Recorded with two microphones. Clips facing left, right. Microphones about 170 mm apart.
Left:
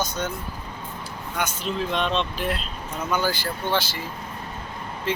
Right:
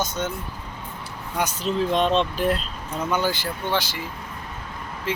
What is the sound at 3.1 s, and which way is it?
Speech, 20° right (ahead or behind).